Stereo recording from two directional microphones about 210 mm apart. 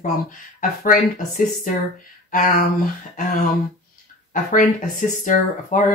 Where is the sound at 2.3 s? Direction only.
35° left (ahead or behind).